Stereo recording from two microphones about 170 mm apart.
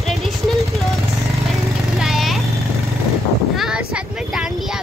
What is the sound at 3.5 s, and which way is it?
Speech, 5° right (ahead or behind).